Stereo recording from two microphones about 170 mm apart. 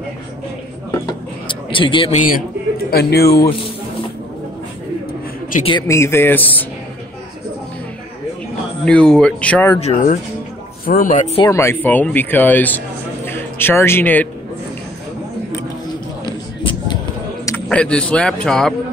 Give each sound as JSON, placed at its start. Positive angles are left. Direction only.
{"t": 1.5, "sound": "speech", "side_deg": 30}
{"t": 2.1, "sound": "speech", "side_deg": 55}
{"t": 2.9, "sound": "speech", "side_deg": 65}
{"t": 5.6, "sound": "a man's voice", "side_deg": 30}
{"t": 5.9, "sound": "speech", "side_deg": 15}
{"t": 8.8, "sound": "a man's voice", "side_deg": 5}
{"t": 9.8, "sound": "speech", "side_deg": 45}
{"t": 11.4, "sound": "a man's voice", "side_deg": 15}
{"t": 16.3, "sound": "a sound", "side_deg": 25}
{"t": 17.6, "sound": "a man's voice", "side_deg": 5}